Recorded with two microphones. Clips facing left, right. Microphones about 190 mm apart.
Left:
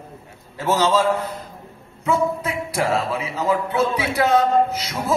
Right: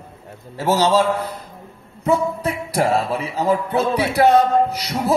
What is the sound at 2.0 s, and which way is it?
Speech, 35° right (ahead or behind).